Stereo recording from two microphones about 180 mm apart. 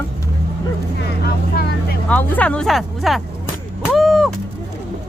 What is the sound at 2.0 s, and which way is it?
Speech, 5° left (ahead or behind).